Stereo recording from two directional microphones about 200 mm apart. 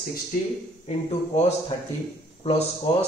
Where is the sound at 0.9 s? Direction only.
30° left (ahead or behind).